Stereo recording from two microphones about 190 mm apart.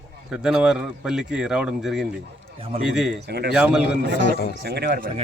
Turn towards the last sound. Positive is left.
turn(degrees=-60)  # may be behind; listen again after turning